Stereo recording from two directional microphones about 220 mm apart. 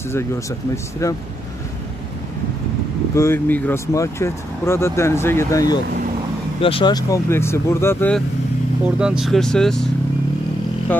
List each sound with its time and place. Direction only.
1.0 s speech: 15° left (ahead or behind)
3.2 s speech: 10° left (ahead or behind)
8.8 s speech: 5° right (ahead or behind)